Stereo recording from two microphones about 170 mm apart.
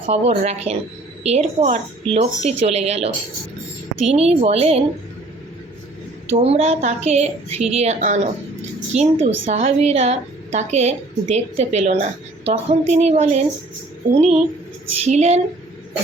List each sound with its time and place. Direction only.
0.0 s a woman's voice: 40° right (ahead or behind)
6.3 s a woman's voice: 35° right (ahead or behind)